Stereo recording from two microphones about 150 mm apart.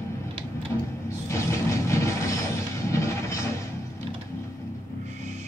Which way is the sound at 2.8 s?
20° left (ahead or behind).